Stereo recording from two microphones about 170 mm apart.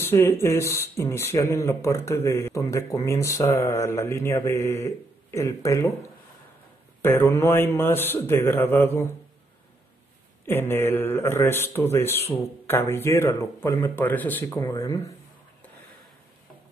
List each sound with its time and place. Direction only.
0.0 s speech: 15° left (ahead or behind)
7.0 s speech: 15° left (ahead or behind)
10.4 s speech: 15° left (ahead or behind)